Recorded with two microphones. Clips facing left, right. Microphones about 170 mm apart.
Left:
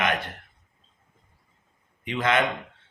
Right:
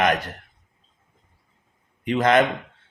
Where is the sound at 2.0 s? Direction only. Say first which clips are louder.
Right 6 dB; 40° right (ahead or behind).